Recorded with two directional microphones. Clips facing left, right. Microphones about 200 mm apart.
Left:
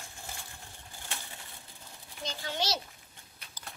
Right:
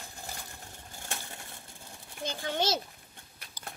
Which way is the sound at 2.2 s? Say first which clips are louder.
Right 4 dB; 50° right (ahead or behind).